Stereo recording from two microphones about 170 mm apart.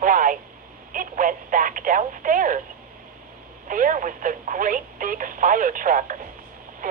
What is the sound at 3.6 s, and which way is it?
Speech, 50° right (ahead or behind).